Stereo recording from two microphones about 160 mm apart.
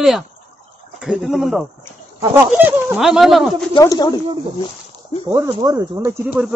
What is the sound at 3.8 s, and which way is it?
Speech, 25° left (ahead or behind).